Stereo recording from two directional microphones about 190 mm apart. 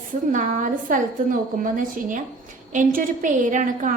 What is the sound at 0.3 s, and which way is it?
A woman's voice, 45° right (ahead or behind).